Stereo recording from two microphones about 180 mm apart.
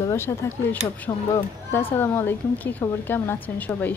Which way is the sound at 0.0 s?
15° left (ahead or behind).